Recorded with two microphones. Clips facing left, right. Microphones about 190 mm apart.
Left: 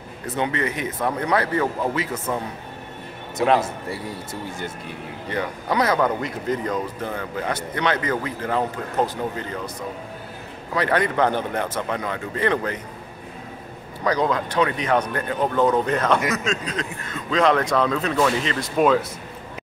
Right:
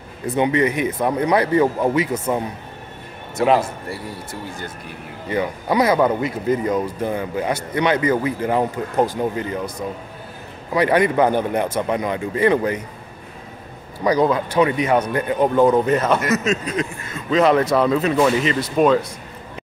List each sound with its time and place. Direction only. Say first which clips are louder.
0.4 s a man's voice: right 7 dB; 15° right (ahead or behind)
5.3 s a man's voice: right 5 dB; 10° right (ahead or behind)
10.7 s a man's voice: right 5 dB; 15° right (ahead or behind)
14.0 s a man's voice: right 4 dB; 10° right (ahead or behind)